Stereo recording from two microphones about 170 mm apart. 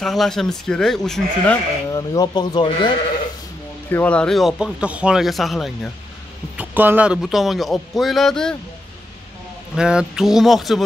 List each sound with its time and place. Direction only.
0.0 s speech: centre (ahead or behind)
1.9 s speech: 20° left (ahead or behind)
3.9 s speech: 10° left (ahead or behind)
9.8 s speech: 5° right (ahead or behind)